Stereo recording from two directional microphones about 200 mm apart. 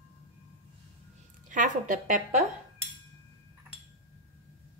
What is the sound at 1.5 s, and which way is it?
Speech, 40° right (ahead or behind).